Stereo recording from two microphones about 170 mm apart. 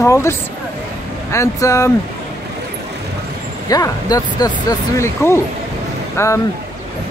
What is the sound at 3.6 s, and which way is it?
Speech, 20° left (ahead or behind).